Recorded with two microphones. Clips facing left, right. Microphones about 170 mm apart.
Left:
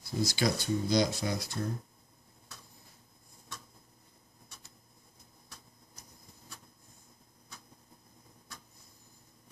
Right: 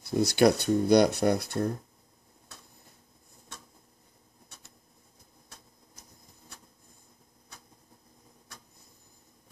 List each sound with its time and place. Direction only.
0.0 s speech: 65° right (ahead or behind)